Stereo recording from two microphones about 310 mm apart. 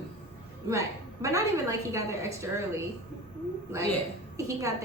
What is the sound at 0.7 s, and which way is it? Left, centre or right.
A woman's voice, centre.